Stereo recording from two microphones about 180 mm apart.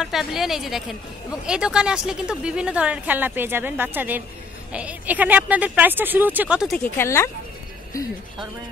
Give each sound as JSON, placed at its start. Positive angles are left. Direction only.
{"t": 0.0, "sound": "a woman's voice", "side_deg": 0}
{"t": 6.8, "sound": "a woman's voice", "side_deg": 15}